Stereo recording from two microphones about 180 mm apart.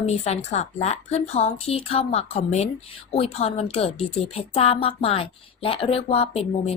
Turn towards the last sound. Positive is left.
turn(degrees=35)  # may be behind; listen again after turning